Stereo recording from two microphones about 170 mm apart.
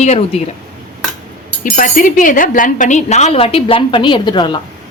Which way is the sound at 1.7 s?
55° left (ahead or behind).